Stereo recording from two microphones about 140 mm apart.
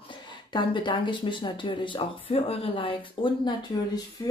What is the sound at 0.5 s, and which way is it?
Speech, 35° left (ahead or behind).